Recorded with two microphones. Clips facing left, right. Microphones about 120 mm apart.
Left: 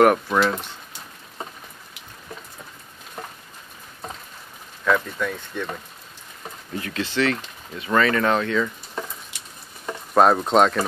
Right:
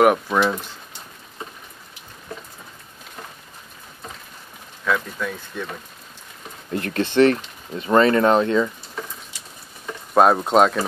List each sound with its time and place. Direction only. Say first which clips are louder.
0.0 s speech: even; 5° right (ahead or behind)
4.8 s speech: left 2 dB; 5° right (ahead or behind)
6.7 s speech: right 5 dB; 55° right (ahead or behind)
7.7 s speech: right 4 dB; 30° right (ahead or behind)
10.1 s speech: right 1 dB; 5° right (ahead or behind)